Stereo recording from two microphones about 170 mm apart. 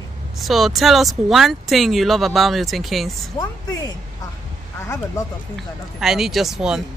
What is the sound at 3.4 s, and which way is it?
Speech, 20° left (ahead or behind).